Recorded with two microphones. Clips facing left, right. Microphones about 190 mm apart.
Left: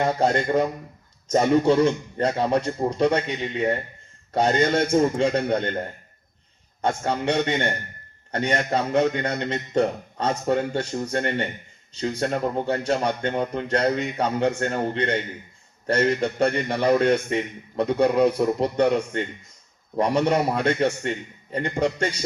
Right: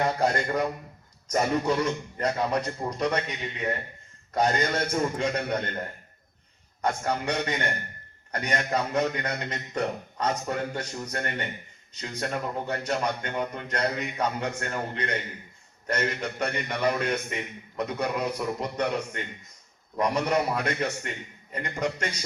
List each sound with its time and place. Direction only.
0.0 s speech: 25° left (ahead or behind)
6.8 s a man's voice: 25° left (ahead or behind)